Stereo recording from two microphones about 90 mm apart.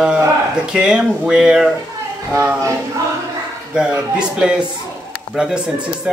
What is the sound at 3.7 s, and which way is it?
Speech, 10° right (ahead or behind).